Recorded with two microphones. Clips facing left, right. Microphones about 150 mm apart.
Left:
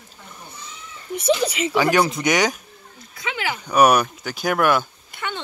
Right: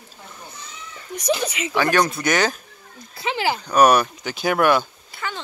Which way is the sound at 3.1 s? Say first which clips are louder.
Right 4 dB; 30° right (ahead or behind).